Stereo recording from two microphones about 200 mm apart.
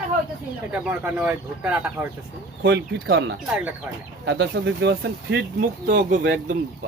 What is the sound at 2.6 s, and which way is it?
Speech, 60° right (ahead or behind).